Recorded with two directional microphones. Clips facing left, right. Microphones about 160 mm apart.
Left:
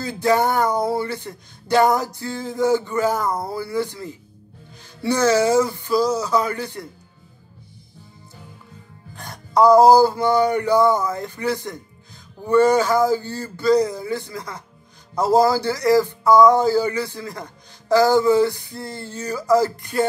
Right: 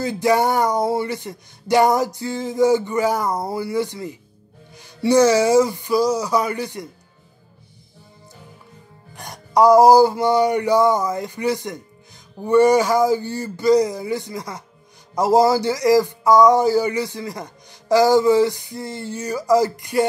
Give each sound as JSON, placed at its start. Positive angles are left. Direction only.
{"t": 0.0, "sound": "speech", "side_deg": -15}
{"t": 9.1, "sound": "speech", "side_deg": -15}